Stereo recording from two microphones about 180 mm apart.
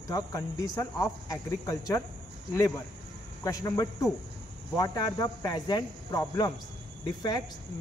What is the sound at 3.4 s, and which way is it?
Speech, 20° left (ahead or behind).